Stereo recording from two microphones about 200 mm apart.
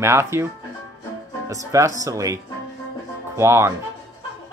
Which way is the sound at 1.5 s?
15° right (ahead or behind).